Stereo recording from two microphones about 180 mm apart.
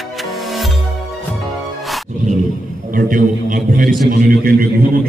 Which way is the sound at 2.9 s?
50° right (ahead or behind).